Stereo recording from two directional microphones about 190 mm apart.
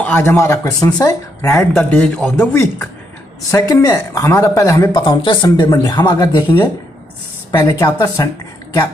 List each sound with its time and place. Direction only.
0.0 s a man's voice: 10° left (ahead or behind)